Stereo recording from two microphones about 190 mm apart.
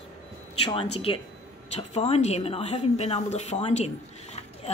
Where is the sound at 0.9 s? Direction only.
30° left (ahead or behind).